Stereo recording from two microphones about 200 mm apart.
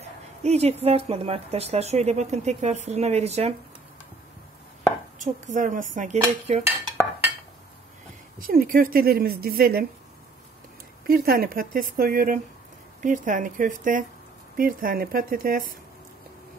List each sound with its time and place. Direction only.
0.4 s speech: 30° right (ahead or behind)
5.2 s speech: 40° right (ahead or behind)
8.4 s speech: 45° right (ahead or behind)
11.1 s speech: 45° right (ahead or behind)